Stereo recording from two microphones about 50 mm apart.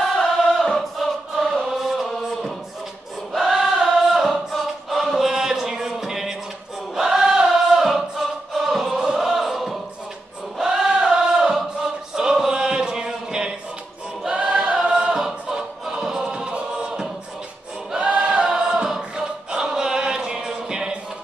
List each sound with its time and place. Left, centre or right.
0.0 s music: centre
1.3 s chant: centre
3.3 s choir: centre
5.3 s music: centre
7.0 s choir: centre
9.0 s chant: centre
10.6 s choir: centre
18.5 s choir: centre